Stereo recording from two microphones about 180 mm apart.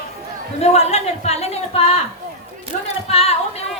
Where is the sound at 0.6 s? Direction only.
35° left (ahead or behind).